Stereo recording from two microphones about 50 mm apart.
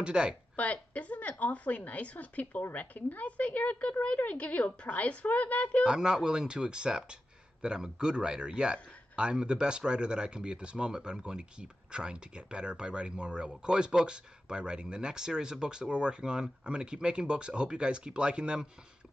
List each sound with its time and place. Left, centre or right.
0.0 s a man's voice: centre
0.6 s a woman's voice: left
5.9 s a man's voice: centre